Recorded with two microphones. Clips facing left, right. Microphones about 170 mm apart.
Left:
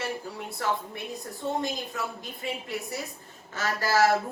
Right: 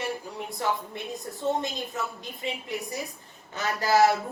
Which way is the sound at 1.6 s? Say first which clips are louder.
Even; 20° right (ahead or behind).